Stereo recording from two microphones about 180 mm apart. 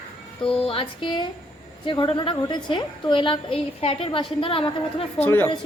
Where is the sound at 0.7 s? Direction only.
30° left (ahead or behind).